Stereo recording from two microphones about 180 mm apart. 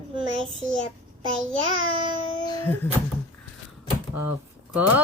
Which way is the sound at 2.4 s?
20° left (ahead or behind).